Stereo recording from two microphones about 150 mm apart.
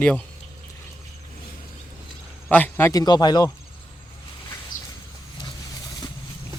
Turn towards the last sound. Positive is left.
turn(degrees=60)  # may be behind; listen again after turning